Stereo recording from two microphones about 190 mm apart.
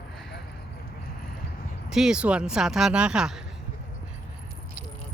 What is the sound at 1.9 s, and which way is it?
Speech, 5° right (ahead or behind).